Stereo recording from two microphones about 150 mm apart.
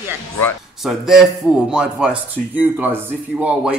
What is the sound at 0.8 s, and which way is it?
Speech, centre (ahead or behind).